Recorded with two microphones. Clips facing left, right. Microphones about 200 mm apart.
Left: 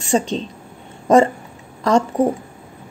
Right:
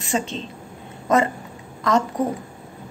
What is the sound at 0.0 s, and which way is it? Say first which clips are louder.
A woman's voice: left 6 dB; 30° left (ahead or behind).